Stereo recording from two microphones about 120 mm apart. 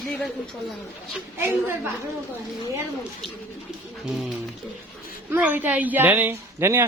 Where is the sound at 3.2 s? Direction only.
5° left (ahead or behind).